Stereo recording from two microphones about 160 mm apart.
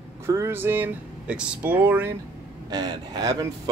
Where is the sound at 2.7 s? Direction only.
25° right (ahead or behind).